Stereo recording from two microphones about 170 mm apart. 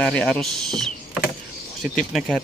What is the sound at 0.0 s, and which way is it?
Speech, 5° left (ahead or behind).